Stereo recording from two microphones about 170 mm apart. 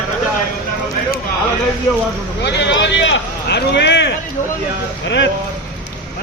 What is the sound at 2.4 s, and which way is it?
Speech, 90° left.